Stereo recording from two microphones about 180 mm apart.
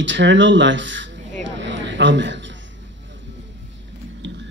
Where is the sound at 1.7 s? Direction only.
85° right.